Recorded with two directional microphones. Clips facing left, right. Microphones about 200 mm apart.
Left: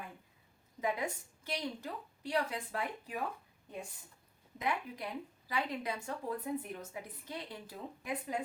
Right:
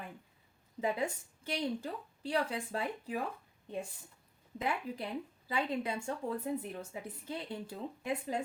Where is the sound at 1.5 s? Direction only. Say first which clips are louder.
Right 4 dB; 30° right (ahead or behind).